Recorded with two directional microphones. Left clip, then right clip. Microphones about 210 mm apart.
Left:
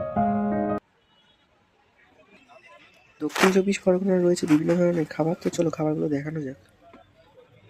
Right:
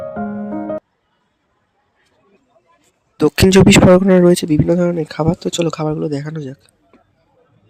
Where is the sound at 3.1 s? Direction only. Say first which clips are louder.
Right 10 dB; 45° right (ahead or behind); by 6.5 s 20° right (ahead or behind).